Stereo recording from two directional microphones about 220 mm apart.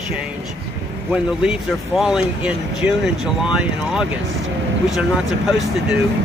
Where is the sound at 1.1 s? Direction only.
5° right (ahead or behind).